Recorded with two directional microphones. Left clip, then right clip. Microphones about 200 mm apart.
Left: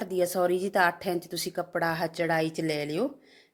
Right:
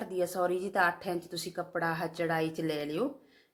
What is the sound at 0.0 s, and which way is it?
A woman's voice, 45° left (ahead or behind).